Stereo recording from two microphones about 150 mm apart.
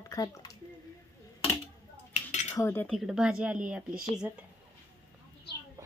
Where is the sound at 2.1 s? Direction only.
50° left (ahead or behind).